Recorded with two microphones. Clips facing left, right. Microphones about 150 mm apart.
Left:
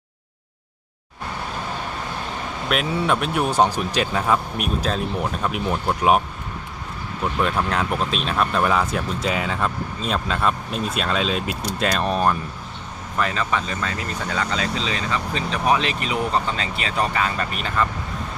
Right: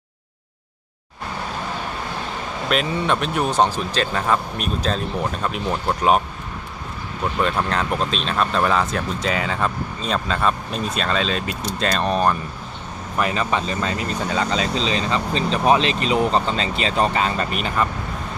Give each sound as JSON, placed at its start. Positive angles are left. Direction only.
{"t": 2.6, "sound": "speech", "side_deg": 5}
{"t": 7.4, "sound": "speech", "side_deg": 5}
{"t": 13.1, "sound": "speech", "side_deg": -15}